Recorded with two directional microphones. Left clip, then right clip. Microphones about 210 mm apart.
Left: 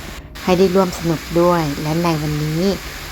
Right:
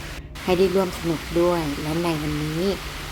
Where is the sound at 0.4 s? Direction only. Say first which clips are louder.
Left 5 dB; 10° left (ahead or behind).